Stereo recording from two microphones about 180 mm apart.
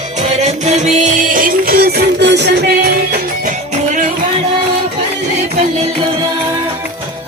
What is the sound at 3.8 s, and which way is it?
Music, 45° right (ahead or behind).